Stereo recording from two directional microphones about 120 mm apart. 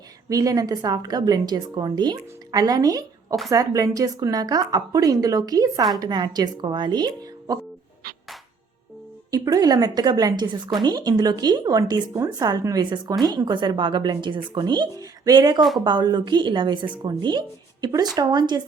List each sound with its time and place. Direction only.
0.3 s speech: 30° right (ahead or behind)
9.3 s speech: 30° right (ahead or behind)